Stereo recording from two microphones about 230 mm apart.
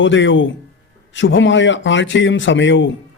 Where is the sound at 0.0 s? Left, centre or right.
Left.